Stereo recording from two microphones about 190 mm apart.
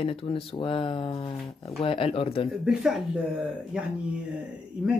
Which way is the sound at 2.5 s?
Centre (ahead or behind).